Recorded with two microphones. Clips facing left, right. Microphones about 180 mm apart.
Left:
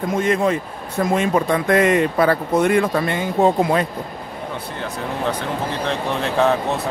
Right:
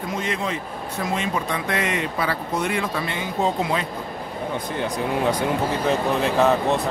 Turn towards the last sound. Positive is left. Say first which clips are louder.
# even
turn(degrees=0)  # may be behind; listen again after turning